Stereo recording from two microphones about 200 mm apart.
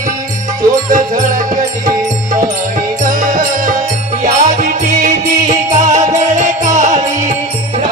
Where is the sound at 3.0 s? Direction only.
40° right (ahead or behind).